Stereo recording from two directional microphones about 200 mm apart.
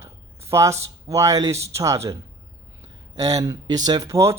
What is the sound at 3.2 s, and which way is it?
Speech, 20° right (ahead or behind).